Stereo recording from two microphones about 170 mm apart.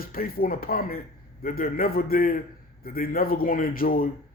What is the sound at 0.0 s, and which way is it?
Speech, 60° left (ahead or behind).